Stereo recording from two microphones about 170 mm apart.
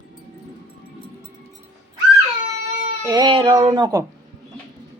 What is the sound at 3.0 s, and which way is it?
Speech, 25° right (ahead or behind).